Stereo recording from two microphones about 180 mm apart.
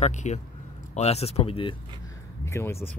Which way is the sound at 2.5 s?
15° left (ahead or behind).